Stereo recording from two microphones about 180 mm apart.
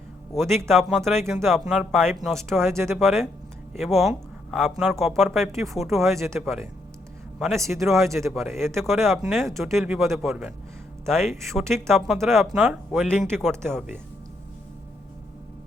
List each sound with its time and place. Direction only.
0.7 s speech: centre (ahead or behind)
2.4 s speech: 15° right (ahead or behind)
3.0 s speech: centre (ahead or behind)
5.5 s speech: 15° right (ahead or behind)
5.7 s speech: centre (ahead or behind)
6.1 s speech: 15° right (ahead or behind)
7.3 s a man's voice: centre (ahead or behind)
7.6 s speech: 15° right (ahead or behind)
8.3 s speech: centre (ahead or behind)
13.7 s speech: 5° right (ahead or behind)